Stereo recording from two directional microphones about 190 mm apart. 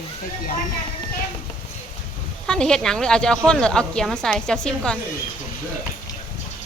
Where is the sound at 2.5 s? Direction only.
5° left (ahead or behind).